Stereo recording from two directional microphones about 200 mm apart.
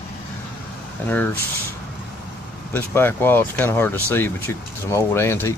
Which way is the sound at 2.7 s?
10° left (ahead or behind).